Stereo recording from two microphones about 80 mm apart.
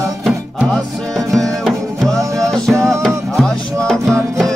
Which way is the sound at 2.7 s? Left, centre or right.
Right.